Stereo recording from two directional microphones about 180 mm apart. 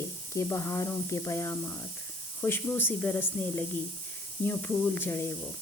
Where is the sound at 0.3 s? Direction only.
15° left (ahead or behind).